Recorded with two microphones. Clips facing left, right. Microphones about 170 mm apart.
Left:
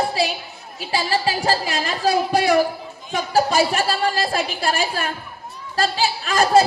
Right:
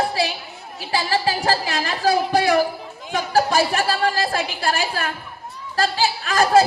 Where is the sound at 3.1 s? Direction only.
15° left (ahead or behind).